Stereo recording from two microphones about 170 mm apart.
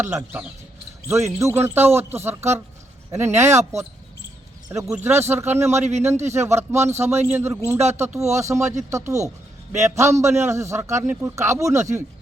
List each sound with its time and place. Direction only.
0.0 s a man's voice: 15° right (ahead or behind)